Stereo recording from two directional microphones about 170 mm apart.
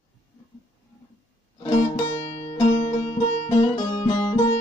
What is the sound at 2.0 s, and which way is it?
Music, 15° left (ahead or behind).